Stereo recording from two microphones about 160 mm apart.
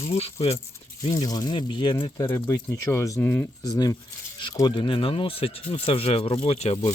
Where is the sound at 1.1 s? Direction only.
25° left (ahead or behind).